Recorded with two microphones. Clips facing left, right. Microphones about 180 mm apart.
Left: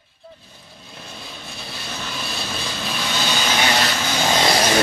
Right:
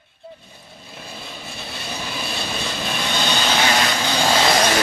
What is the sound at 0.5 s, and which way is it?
Vehicle, centre (ahead or behind).